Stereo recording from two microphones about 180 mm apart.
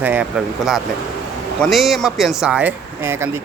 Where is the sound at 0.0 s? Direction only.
10° right (ahead or behind).